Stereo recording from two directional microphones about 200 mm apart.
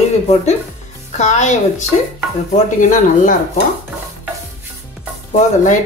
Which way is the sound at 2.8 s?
40° left (ahead or behind).